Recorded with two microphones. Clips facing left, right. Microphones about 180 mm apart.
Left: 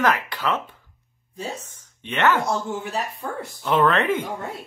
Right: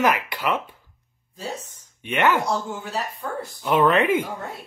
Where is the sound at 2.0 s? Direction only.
10° right (ahead or behind).